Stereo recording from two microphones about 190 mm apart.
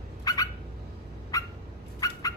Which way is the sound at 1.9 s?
20° left (ahead or behind).